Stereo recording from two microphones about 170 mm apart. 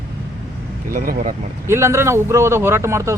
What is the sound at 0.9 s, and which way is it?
Speech, 55° right (ahead or behind).